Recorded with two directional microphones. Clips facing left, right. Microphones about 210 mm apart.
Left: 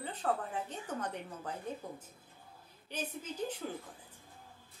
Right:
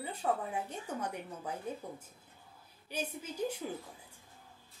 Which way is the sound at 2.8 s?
10° right (ahead or behind).